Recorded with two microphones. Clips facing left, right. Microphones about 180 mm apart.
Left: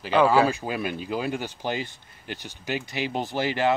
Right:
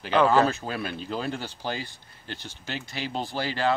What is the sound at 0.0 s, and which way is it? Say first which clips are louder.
Speech: left 1 dB; 5° left (ahead or behind).